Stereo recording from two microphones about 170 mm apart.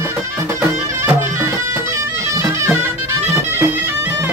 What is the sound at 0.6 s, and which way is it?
Music, 15° right (ahead or behind).